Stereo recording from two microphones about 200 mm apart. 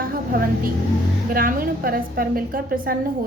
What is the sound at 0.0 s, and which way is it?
Vehicle, 45° right (ahead or behind).